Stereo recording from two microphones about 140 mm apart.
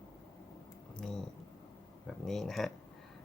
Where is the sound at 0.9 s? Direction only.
5° left (ahead or behind).